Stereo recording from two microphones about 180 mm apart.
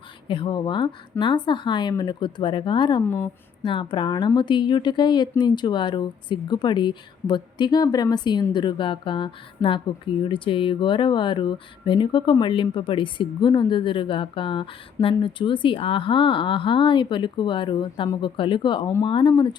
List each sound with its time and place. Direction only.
0.3 s speech: 30° left (ahead or behind)